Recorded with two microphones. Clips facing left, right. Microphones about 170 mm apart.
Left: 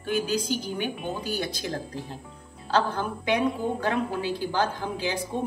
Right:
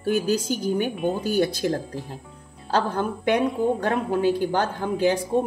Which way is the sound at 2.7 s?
50° right (ahead or behind).